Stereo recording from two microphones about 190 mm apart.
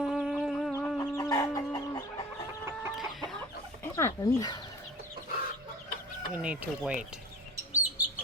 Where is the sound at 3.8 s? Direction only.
15° left (ahead or behind).